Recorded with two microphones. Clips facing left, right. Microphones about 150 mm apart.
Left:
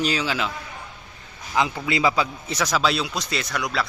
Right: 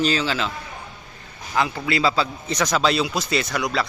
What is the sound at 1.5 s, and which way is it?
A man's voice, 20° left (ahead or behind).